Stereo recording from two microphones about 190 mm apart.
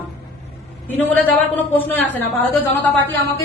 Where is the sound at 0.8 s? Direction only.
10° left (ahead or behind).